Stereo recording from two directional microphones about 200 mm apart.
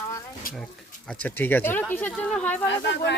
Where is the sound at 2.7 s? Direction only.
60° left (ahead or behind).